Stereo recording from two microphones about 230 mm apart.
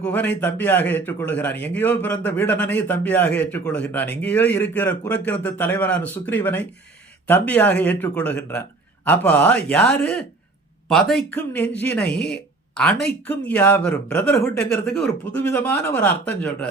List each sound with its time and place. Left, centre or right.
0.0 s a man's voice: centre
12.0 s speech: left
12.3 s a sound: centre
13.2 s a man's voice: centre